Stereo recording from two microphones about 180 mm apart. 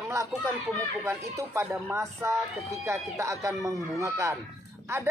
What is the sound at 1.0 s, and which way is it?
Speech, 15° right (ahead or behind).